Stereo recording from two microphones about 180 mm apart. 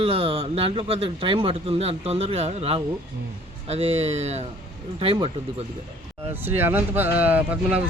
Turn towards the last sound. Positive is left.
turn(degrees=-10)  # may be behind; listen again after turning